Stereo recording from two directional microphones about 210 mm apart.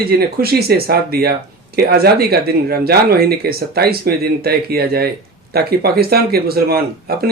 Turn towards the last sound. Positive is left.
turn(degrees=-45)  # may be behind; listen again after turning